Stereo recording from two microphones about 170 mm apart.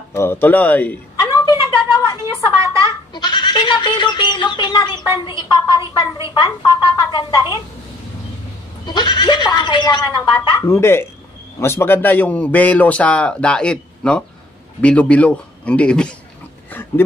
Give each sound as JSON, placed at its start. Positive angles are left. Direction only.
{"t": 0.1, "sound": "a man's voice", "side_deg": 15}
{"t": 1.9, "sound": "goat", "side_deg": 25}
{"t": 5.2, "sound": "speech", "side_deg": 25}
{"t": 8.8, "sound": "a man's voice", "side_deg": 25}